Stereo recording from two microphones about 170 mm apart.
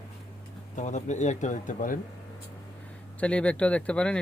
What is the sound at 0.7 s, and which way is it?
Speech, 45° left (ahead or behind).